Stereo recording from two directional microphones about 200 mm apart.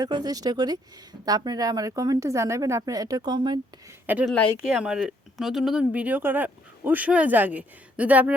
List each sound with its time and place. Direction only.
0.0 s speech: 20° right (ahead or behind)
4.0 s speech: 10° right (ahead or behind)